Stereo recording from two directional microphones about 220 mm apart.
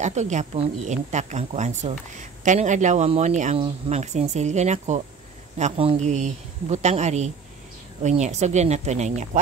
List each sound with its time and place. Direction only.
0.0 s speech: 30° right (ahead or behind)